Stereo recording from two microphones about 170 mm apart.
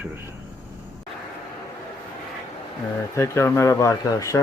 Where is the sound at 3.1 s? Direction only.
15° left (ahead or behind).